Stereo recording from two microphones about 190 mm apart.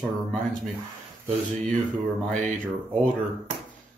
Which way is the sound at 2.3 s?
40° right (ahead or behind).